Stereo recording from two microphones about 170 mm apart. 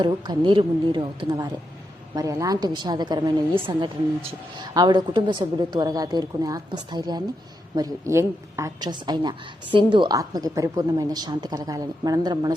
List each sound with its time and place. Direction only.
0.0 s a woman's voice: 30° right (ahead or behind)